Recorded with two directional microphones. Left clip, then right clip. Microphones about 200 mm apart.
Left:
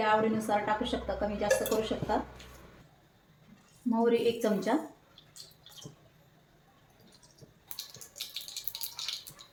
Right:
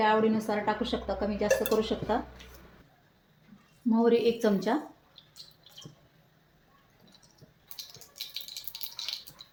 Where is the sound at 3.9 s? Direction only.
45° right (ahead or behind).